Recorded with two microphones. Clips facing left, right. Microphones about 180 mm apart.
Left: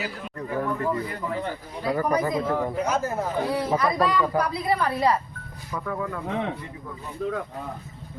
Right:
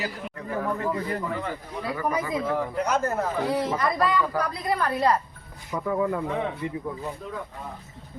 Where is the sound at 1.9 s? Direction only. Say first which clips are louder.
Left 4 dB; 40° left (ahead or behind).